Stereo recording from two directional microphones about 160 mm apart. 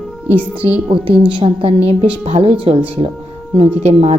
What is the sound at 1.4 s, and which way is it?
A woman's voice, 35° right (ahead or behind).